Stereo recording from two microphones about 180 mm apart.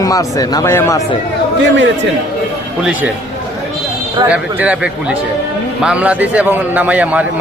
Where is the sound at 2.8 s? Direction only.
10° right (ahead or behind).